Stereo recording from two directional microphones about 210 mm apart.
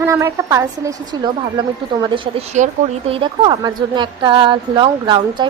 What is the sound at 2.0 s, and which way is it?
Speech, 20° right (ahead or behind).